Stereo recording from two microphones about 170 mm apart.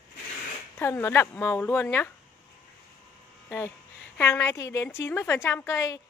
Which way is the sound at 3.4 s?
10° left (ahead or behind).